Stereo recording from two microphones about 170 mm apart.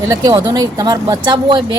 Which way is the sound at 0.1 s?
25° right (ahead or behind).